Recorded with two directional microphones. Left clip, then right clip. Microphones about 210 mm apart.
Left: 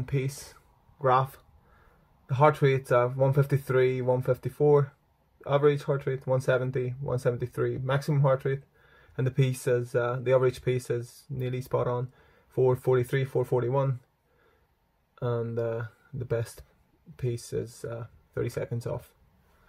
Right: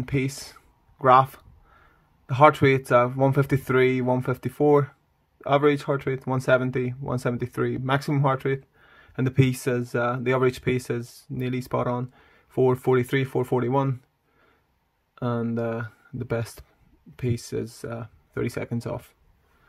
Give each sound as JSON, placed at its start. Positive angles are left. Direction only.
{"t": 0.0, "sound": "speech", "side_deg": -20}
{"t": 15.1, "sound": "speech", "side_deg": -25}